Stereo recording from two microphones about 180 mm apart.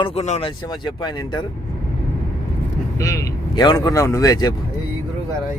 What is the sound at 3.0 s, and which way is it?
Speech, 20° left (ahead or behind).